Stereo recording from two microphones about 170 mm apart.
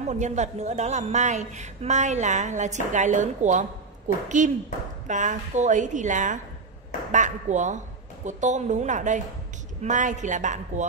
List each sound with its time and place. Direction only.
0.0 s a woman's voice: 40° right (ahead or behind)